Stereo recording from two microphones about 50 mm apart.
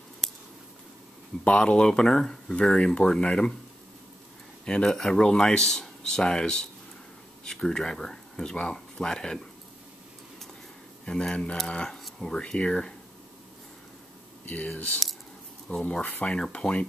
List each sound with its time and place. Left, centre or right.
1.4 s speech: left
4.6 s speech: centre
11.1 s speech: centre
14.4 s a sound: left
15.7 s speech: centre
16.0 s speech: left
16.3 s speech: centre